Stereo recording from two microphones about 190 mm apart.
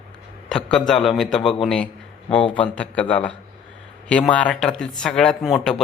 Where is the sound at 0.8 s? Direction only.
Centre (ahead or behind).